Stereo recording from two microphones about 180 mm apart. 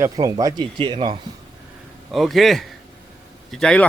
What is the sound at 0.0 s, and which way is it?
Speech, 20° right (ahead or behind).